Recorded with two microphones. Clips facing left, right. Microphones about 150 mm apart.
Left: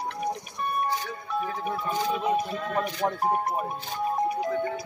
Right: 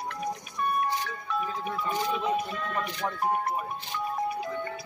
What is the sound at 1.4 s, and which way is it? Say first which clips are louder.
Speech: left 2 dB; 60° left (ahead or behind).